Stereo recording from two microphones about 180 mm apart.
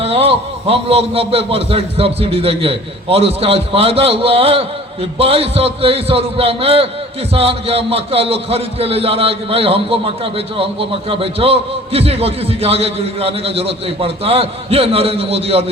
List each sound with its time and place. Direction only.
0.0 s a man's voice: 35° right (ahead or behind)